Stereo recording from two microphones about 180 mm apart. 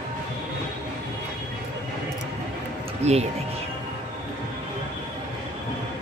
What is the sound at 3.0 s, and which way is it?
Speech, 35° right (ahead or behind).